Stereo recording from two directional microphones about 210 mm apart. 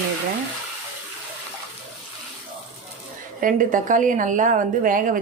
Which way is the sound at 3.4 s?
40° right (ahead or behind).